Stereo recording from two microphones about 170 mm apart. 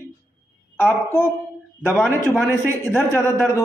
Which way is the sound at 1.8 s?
10° left (ahead or behind).